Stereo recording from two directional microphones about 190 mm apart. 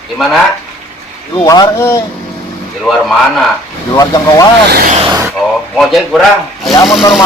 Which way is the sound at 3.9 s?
20° left (ahead or behind).